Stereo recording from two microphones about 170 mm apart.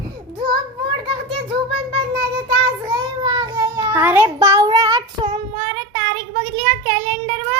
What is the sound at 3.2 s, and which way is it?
Cat, 25° right (ahead or behind).